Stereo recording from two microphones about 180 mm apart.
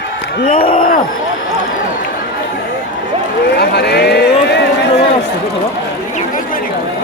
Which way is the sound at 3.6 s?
65° left (ahead or behind).